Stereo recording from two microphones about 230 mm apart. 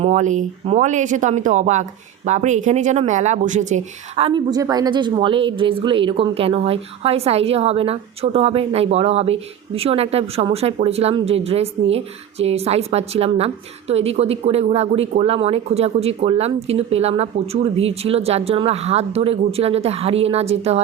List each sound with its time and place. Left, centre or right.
0.0 s speech: right